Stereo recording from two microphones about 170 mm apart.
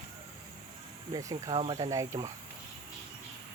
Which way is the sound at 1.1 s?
25° right (ahead or behind).